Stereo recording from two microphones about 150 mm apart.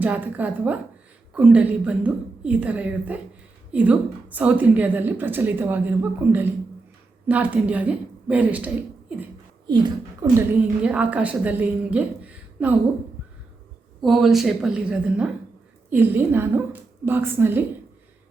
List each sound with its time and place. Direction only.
0.0 s a woman's voice: 10° right (ahead or behind)
9.6 s speech: 30° right (ahead or behind)
10.8 s a woman's voice: 10° right (ahead or behind)
14.0 s a woman's voice: centre (ahead or behind)